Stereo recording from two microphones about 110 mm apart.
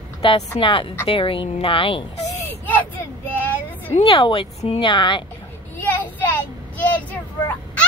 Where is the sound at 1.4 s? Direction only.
85° left.